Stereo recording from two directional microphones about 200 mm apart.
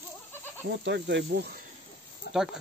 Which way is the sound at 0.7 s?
60° right (ahead or behind).